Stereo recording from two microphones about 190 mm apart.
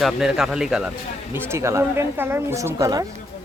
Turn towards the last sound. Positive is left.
turn(degrees=-15)  # may be behind; listen again after turning